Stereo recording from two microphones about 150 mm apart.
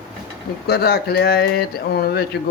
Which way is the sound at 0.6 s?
90° left.